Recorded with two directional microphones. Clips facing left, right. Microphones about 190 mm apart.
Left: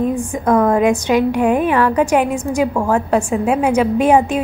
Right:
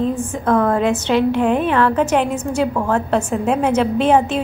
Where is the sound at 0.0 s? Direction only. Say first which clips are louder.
Left 2 dB; 15° left (ahead or behind).